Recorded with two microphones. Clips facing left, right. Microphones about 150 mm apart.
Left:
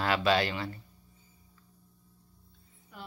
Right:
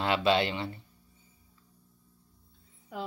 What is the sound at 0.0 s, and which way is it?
Speech, 25° right (ahead or behind).